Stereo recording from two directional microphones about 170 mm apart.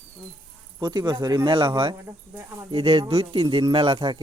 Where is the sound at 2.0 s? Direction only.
15° right (ahead or behind).